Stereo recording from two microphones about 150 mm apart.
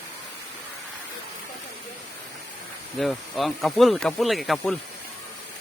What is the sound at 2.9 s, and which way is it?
Speech, centre (ahead or behind).